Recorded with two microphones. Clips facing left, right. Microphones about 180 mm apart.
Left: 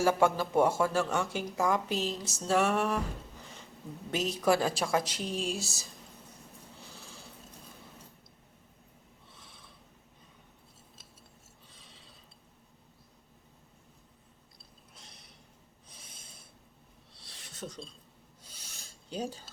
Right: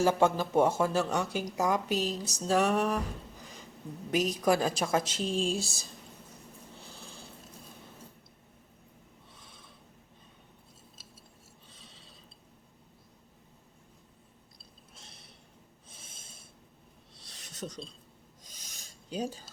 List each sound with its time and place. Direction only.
0.0 s speech: 20° right (ahead or behind)
4.1 s speech: 15° right (ahead or behind)
14.9 s a sound: 25° right (ahead or behind)
15.9 s snort: 25° right (ahead or behind)
17.6 s speech: 15° right (ahead or behind)
18.4 s filing: 15° right (ahead or behind)